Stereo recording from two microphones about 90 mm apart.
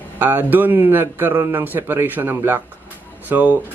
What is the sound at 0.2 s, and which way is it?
Speech, 20° right (ahead or behind).